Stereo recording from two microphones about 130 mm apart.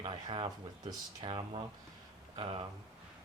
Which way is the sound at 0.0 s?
40° right (ahead or behind).